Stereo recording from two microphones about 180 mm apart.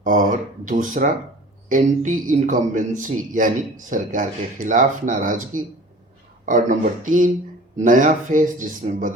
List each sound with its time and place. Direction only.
0.0 s speech: 50° right (ahead or behind)